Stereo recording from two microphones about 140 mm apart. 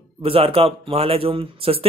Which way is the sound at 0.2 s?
40° right (ahead or behind).